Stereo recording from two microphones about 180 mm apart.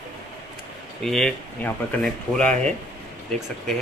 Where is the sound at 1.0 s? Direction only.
Centre (ahead or behind).